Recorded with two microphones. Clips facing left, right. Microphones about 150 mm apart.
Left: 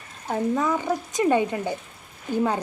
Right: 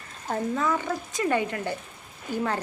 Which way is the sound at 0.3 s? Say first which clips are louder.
Left 3 dB; 10° left (ahead or behind).